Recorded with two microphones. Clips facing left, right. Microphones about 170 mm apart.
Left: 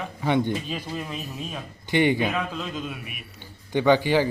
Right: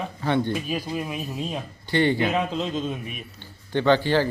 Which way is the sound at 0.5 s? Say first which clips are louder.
Right 2 dB; 10° right (ahead or behind).